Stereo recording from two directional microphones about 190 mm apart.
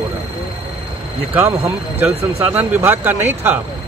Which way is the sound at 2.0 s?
10° right (ahead or behind).